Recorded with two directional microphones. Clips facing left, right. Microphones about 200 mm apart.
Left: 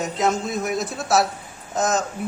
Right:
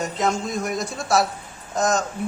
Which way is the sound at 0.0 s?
Centre (ahead or behind).